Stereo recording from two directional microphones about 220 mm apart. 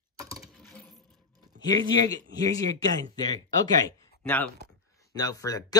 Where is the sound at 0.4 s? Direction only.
Centre (ahead or behind).